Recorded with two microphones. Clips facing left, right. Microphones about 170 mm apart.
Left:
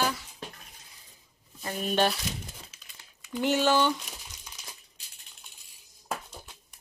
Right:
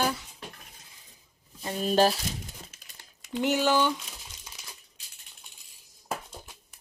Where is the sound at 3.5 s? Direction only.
10° right (ahead or behind).